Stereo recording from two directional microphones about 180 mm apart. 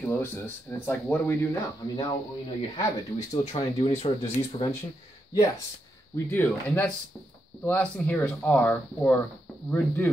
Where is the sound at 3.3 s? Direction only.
35° left (ahead or behind).